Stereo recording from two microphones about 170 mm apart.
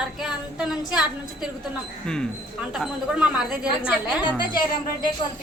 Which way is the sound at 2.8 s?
5° right (ahead or behind).